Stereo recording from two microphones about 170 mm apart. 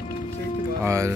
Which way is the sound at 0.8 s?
15° right (ahead or behind).